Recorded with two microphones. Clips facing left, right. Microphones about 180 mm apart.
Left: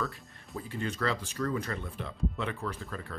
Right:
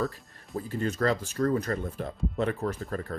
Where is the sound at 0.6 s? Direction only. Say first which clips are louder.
Right 5 dB; 40° right (ahead or behind).